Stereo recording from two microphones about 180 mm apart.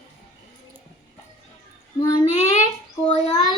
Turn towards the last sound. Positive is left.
turn(degrees=25)  # may be behind; listen again after turning